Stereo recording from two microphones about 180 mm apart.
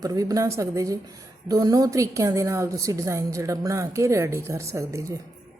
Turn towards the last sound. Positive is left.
turn(degrees=-15)  # may be behind; listen again after turning